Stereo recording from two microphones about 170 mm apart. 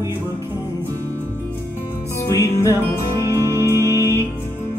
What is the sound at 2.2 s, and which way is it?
Music, 15° left (ahead or behind).